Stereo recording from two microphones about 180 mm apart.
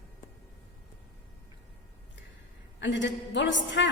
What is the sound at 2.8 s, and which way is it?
A woman's voice, 85° left.